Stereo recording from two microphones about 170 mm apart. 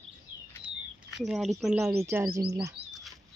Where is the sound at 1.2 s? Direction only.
Centre (ahead or behind).